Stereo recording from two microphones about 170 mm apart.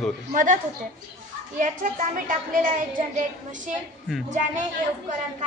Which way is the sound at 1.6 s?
50° right (ahead or behind).